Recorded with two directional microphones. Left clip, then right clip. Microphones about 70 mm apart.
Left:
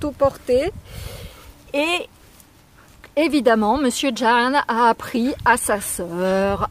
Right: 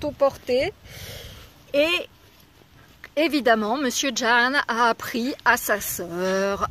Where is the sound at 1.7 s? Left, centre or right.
Left.